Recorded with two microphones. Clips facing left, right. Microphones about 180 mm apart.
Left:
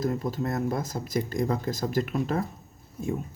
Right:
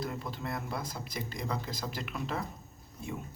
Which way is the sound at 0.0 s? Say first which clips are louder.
Left 9 dB; 45° left (ahead or behind).